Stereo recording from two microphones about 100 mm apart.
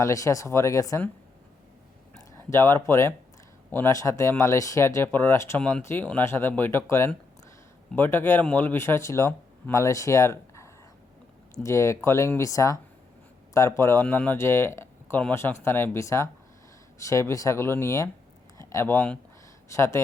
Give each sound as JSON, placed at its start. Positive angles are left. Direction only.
{"t": 0.0, "sound": "speech", "side_deg": 35}
{"t": 2.4, "sound": "speech", "side_deg": 25}
{"t": 3.9, "sound": "speech", "side_deg": 30}
{"t": 5.5, "sound": "speech", "side_deg": 10}